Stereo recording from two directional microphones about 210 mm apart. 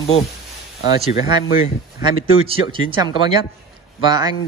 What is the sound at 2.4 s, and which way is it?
A man's voice, 25° right (ahead or behind).